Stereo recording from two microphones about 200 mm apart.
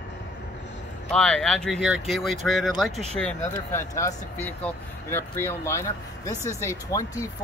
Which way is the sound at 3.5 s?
15° left (ahead or behind).